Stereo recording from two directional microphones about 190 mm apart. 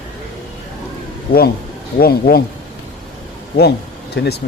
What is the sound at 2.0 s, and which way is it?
Speech, 50° left (ahead or behind).